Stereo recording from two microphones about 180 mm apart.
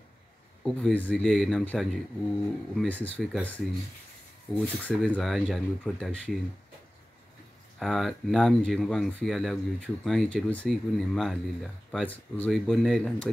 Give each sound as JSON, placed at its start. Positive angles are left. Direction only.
{"t": 0.7, "sound": "speech", "side_deg": 5}
{"t": 7.8, "sound": "speech", "side_deg": 0}